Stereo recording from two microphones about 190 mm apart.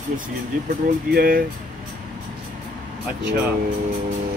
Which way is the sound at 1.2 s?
50° right (ahead or behind).